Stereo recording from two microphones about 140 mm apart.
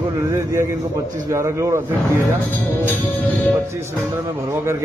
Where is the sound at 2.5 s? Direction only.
10° left (ahead or behind).